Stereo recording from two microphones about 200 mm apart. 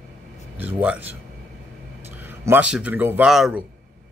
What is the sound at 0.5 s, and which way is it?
Speech, 10° right (ahead or behind).